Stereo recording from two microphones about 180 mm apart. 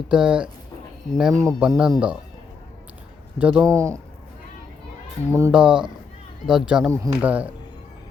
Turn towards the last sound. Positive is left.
turn(degrees=-10)  # may be behind; listen again after turning